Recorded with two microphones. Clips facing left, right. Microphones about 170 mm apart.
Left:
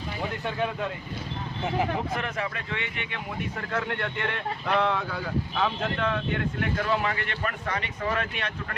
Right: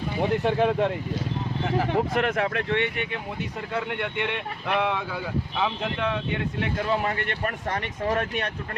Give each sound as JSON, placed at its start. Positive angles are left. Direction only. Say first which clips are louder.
{"t": 0.2, "sound": "speech", "louder": "right 8 dB", "side_deg": -65}
{"t": 2.1, "sound": "speech", "louder": "right 7 dB", "side_deg": -60}
{"t": 3.7, "sound": "speech", "louder": "right 1 dB", "side_deg": -10}
{"t": 6.6, "sound": "speech", "louder": "right 2 dB", "side_deg": -30}